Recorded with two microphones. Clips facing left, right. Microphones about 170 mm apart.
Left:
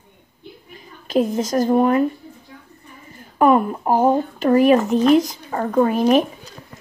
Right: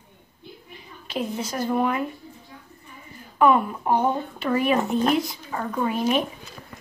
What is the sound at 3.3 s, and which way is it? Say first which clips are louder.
Speech: left 4 dB; 45° left (ahead or behind).